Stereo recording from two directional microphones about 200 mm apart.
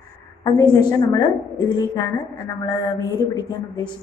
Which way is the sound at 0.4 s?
20° left (ahead or behind).